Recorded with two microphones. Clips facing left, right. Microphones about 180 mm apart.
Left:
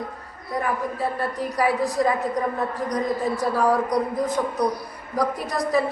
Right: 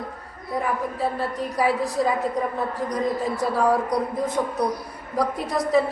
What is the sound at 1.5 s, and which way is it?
Speech, 25° right (ahead or behind).